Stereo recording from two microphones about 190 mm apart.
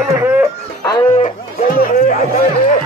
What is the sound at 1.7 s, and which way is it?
Speech, 50° left (ahead or behind).